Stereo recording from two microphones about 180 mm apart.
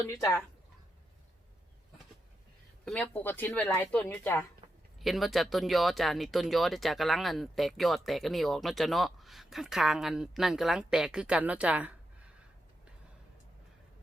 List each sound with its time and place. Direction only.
0.0 s speech: 15° left (ahead or behind)
2.8 s speech: 5° left (ahead or behind)
4.9 s speech: centre (ahead or behind)